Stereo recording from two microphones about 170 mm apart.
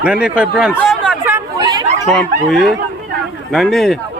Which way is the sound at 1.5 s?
25° right (ahead or behind).